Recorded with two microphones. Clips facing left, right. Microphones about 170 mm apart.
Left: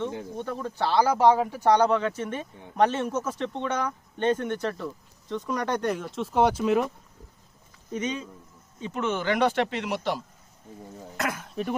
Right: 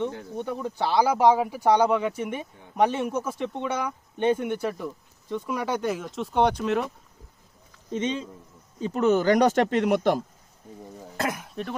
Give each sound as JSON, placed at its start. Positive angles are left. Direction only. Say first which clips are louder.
{"t": 0.3, "sound": "speech", "louder": "right 3 dB", "side_deg": -15}
{"t": 7.9, "sound": "speech", "louder": "right 3 dB", "side_deg": -25}
{"t": 8.8, "sound": "speech", "louder": "right 7 dB", "side_deg": -40}
{"t": 11.2, "sound": "speech", "louder": "right 2 dB", "side_deg": -30}
{"t": 11.6, "sound": "speech", "louder": "left 6 dB", "side_deg": 0}